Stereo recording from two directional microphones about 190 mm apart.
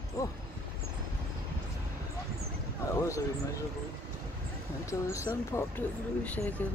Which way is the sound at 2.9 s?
15° left (ahead or behind).